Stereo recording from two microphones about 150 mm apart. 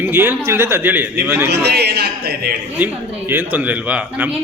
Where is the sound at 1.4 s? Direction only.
90° right.